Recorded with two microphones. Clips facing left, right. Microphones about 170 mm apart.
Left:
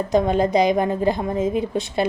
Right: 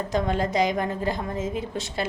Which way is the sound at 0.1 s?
20° left (ahead or behind).